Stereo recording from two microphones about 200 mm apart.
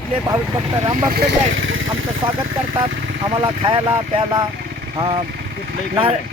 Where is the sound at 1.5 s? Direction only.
75° right (ahead or behind).